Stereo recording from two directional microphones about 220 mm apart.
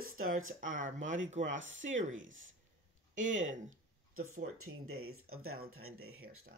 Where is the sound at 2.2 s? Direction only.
60° right (ahead or behind).